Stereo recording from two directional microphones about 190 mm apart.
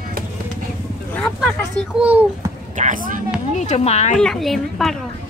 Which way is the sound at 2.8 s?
45° right (ahead or behind).